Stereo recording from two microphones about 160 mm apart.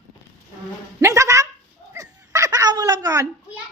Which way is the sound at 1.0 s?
20° right (ahead or behind).